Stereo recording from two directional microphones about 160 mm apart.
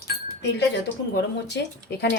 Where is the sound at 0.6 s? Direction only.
90° left.